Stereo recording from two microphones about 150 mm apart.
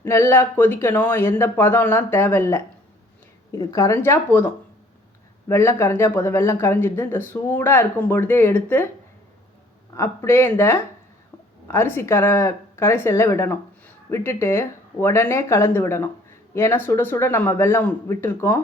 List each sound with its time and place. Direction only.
0.0 s speech: 15° left (ahead or behind)
3.6 s speech: 20° left (ahead or behind)
9.9 s speech: 20° left (ahead or behind)